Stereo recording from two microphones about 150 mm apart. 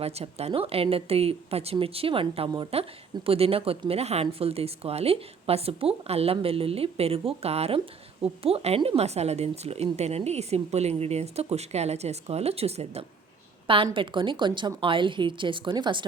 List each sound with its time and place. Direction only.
0.0 s speech: 45° right (ahead or behind)